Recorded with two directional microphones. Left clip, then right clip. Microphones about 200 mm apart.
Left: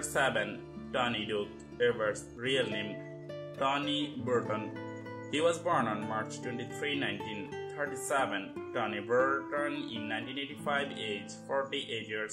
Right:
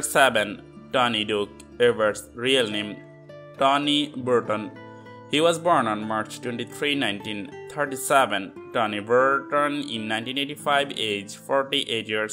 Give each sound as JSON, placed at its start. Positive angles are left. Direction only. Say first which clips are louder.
{"t": 0.1, "sound": "speech", "louder": "right 11 dB", "side_deg": -40}